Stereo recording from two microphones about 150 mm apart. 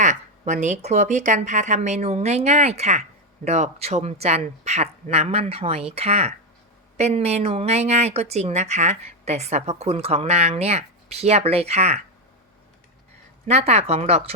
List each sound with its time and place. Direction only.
0.0 s speech: 50° right (ahead or behind)
13.5 s speech: 45° right (ahead or behind)